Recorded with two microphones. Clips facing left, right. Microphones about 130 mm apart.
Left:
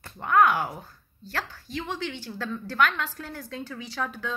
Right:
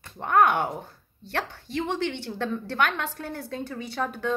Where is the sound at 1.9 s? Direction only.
65° right (ahead or behind).